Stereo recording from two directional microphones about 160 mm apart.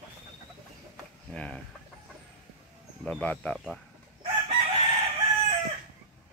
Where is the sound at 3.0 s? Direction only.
10° left (ahead or behind).